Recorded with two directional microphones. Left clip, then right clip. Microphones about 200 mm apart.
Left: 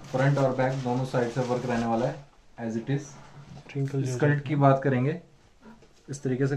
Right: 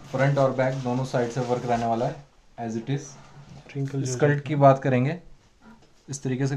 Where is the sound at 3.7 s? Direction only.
Centre (ahead or behind).